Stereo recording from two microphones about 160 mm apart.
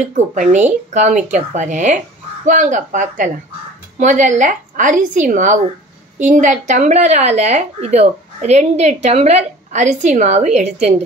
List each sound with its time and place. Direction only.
0.0 s speech: 50° right (ahead or behind)